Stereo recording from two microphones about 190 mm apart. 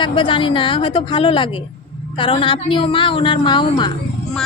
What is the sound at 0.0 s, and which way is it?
A woman's voice, 25° left (ahead or behind).